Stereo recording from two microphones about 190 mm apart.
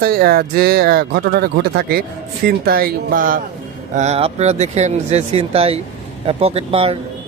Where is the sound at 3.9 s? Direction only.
35° right (ahead or behind).